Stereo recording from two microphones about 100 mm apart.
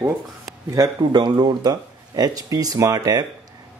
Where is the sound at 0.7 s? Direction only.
45° right (ahead or behind).